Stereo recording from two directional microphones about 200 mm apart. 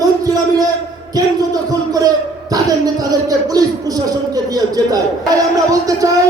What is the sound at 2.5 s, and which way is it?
Speech, 20° right (ahead or behind).